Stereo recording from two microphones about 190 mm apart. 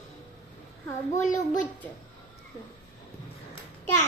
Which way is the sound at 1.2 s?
45° left (ahead or behind).